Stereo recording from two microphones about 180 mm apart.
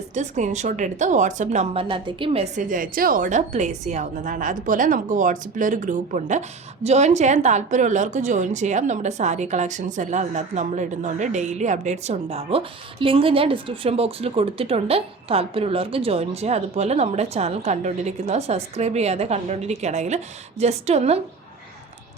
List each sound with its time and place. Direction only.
0.1 s a woman's voice: 40° right (ahead or behind)
1.7 s a woman's voice: 30° right (ahead or behind)
2.6 s a woman's voice: 50° right (ahead or behind)